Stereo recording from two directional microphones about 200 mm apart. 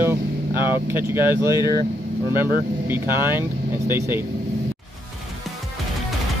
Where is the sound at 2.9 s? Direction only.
10° right (ahead or behind).